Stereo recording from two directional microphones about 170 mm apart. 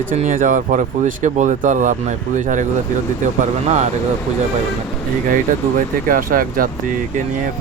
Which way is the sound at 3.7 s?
40° right (ahead or behind).